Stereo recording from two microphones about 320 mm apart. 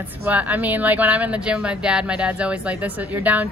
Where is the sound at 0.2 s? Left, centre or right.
Centre.